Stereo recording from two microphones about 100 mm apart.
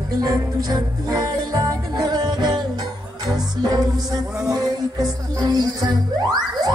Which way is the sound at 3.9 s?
5° right (ahead or behind).